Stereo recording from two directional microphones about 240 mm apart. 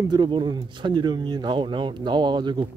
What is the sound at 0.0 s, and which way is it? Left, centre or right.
Speech, centre.